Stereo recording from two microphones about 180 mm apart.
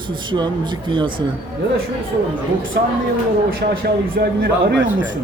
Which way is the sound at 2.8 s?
65° right (ahead or behind).